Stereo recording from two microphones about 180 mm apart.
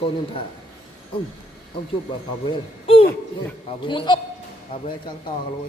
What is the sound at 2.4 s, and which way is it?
Speech, 30° left (ahead or behind).